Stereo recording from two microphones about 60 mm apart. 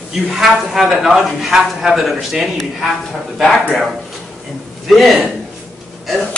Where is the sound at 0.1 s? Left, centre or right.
Centre.